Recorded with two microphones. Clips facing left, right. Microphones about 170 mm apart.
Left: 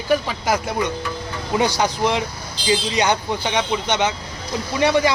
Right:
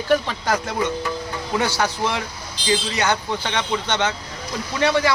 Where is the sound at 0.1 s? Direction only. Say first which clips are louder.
Left 1 dB; 10° left (ahead or behind).